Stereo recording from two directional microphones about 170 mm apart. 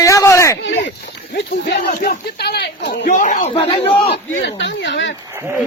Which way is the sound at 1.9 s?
50° left (ahead or behind).